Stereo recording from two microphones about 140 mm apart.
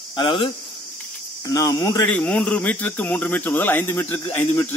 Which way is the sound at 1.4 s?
25° left (ahead or behind).